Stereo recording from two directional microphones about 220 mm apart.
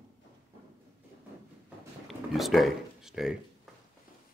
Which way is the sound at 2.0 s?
Centre (ahead or behind).